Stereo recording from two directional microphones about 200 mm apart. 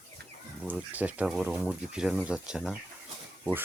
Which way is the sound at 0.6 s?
5° right (ahead or behind).